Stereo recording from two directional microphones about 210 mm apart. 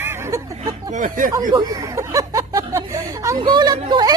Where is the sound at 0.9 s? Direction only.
35° right (ahead or behind).